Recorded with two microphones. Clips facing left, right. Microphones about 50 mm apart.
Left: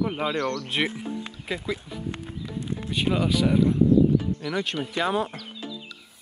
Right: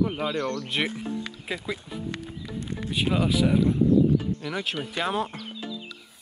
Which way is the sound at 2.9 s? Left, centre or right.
Centre.